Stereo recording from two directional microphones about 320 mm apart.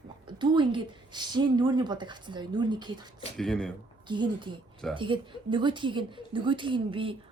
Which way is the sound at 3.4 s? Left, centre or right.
Centre.